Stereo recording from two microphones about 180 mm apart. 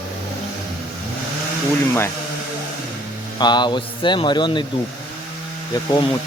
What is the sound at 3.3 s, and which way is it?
Speech, 25° left (ahead or behind).